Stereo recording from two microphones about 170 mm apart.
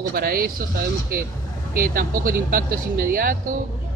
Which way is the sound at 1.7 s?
55° right (ahead or behind).